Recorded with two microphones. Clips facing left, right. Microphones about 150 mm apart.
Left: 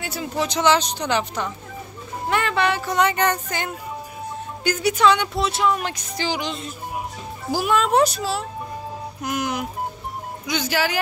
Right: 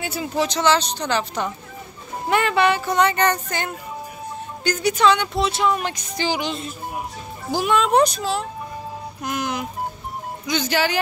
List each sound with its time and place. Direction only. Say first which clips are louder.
0.0 s speech: right 2 dB; 5° right (ahead or behind)
0.5 s speech: left 3 dB; 15° left (ahead or behind)
2.2 s speech: right 3 dB; 10° right (ahead or behind)